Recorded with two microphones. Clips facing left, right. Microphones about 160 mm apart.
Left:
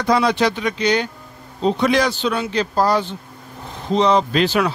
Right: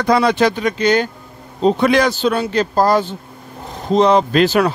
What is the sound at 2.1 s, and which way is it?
Speech, 40° right (ahead or behind).